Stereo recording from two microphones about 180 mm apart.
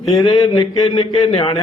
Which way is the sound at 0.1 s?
20° left (ahead or behind).